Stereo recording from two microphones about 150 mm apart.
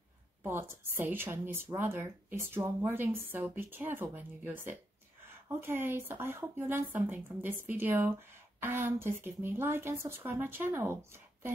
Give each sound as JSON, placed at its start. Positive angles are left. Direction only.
{"t": 0.4, "sound": "speech", "side_deg": -15}